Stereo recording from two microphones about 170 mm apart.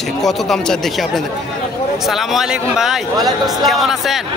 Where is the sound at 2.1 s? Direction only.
Centre (ahead or behind).